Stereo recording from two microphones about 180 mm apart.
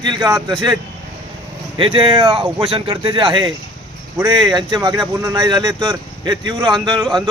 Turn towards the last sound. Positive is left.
turn(degrees=-25)  # may be behind; listen again after turning